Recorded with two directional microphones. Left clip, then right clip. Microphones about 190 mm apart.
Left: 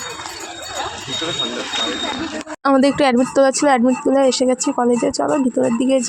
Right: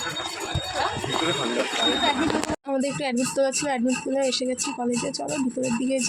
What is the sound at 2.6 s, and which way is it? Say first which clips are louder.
Speech: left 12 dB; 45° left (ahead or behind).